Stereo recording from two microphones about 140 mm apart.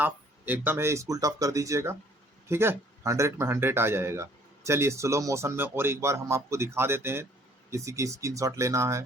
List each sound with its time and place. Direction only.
0.0 s speech: 10° right (ahead or behind)